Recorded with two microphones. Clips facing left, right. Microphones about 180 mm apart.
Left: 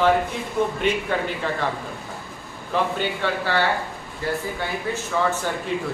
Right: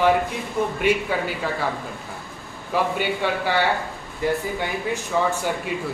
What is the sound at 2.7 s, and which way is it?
Speech, 10° right (ahead or behind).